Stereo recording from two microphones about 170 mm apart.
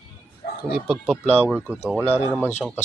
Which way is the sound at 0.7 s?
Centre (ahead or behind).